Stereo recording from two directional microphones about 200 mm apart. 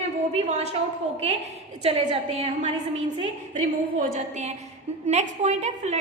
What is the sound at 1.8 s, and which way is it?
Speech, 30° right (ahead or behind).